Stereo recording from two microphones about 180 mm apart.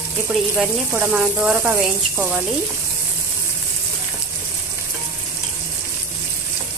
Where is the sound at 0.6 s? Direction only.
10° right (ahead or behind).